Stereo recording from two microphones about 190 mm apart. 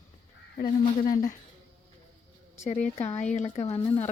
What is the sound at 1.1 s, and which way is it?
Speech, 45° left (ahead or behind).